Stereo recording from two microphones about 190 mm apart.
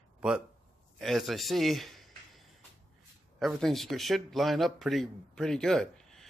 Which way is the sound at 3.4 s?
Centre (ahead or behind).